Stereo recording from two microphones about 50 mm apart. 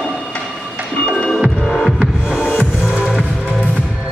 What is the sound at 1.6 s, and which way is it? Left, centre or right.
Music, centre.